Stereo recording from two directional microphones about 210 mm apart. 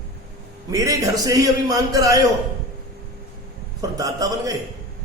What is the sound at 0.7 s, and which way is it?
A man's voice, 15° right (ahead or behind).